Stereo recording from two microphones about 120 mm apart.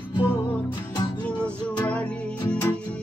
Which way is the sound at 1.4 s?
10° left (ahead or behind).